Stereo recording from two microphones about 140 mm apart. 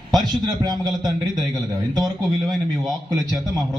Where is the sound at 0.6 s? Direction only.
30° right (ahead or behind).